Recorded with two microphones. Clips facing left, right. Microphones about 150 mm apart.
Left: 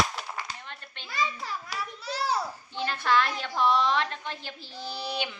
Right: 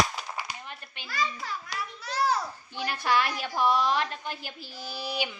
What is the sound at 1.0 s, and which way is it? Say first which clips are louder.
A child's voice: left 1 dB; 20° left (ahead or behind).